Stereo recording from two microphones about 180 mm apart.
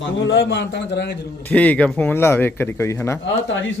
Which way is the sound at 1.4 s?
10° left (ahead or behind).